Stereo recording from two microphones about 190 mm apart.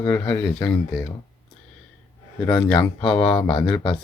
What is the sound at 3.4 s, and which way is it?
Speech, 25° left (ahead or behind).